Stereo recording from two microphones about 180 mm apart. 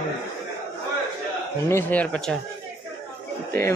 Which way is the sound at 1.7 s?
10° left (ahead or behind).